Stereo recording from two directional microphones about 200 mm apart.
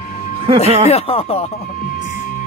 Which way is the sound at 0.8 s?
30° left (ahead or behind).